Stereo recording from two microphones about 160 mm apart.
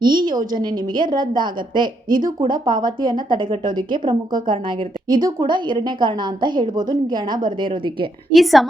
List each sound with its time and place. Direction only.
0.0 s a woman's voice: 30° right (ahead or behind)
2.0 s speech: 60° right (ahead or behind)
2.4 s a woman's voice: 30° right (ahead or behind)
8.3 s a woman's voice: centre (ahead or behind)